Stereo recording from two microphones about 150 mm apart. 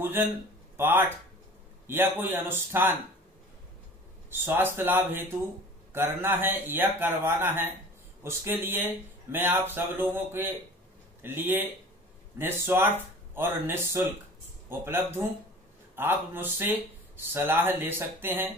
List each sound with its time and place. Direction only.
0.0 s a man's voice: 15° right (ahead or behind)
4.3 s a man's voice: 15° right (ahead or behind)